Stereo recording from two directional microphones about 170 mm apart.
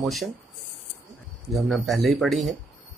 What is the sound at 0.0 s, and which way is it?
Speech, centre (ahead or behind).